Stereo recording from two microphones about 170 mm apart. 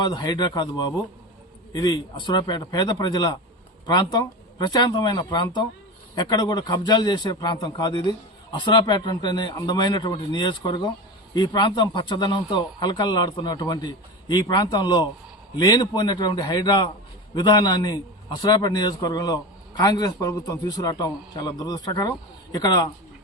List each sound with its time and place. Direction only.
0.0 s a man's voice: 25° left (ahead or behind)
1.7 s a man's voice: 25° left (ahead or behind)